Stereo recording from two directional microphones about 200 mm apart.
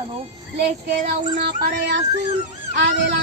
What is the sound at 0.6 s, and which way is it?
Speech, 55° right (ahead or behind).